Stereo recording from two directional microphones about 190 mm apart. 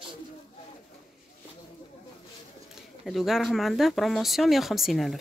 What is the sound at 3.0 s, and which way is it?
Speech, centre (ahead or behind).